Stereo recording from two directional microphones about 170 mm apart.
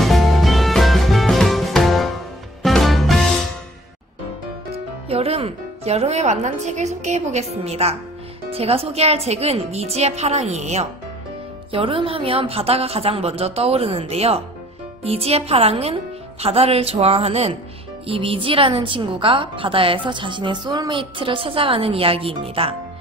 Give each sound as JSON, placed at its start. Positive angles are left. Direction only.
{"t": 0.0, "sound": "music", "side_deg": 0}
{"t": 4.7, "sound": "a woman's voice", "side_deg": -35}